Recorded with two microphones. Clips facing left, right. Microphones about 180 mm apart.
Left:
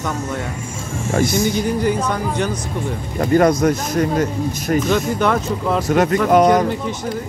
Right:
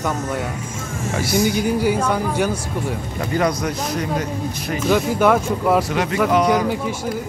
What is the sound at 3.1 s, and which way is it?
Speech, 50° left (ahead or behind).